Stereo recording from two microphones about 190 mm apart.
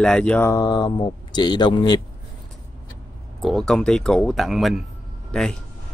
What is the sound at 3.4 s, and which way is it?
Speech, centre (ahead or behind).